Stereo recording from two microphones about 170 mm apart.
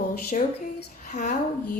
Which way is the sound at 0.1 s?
55° left (ahead or behind).